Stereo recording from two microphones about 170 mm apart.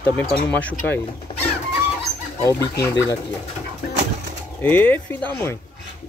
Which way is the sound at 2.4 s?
15° left (ahead or behind).